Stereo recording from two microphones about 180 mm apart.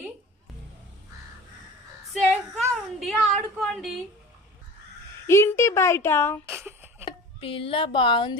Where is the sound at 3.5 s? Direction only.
Centre (ahead or behind).